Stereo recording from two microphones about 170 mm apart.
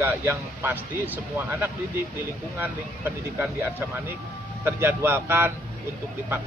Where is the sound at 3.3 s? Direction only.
10° right (ahead or behind).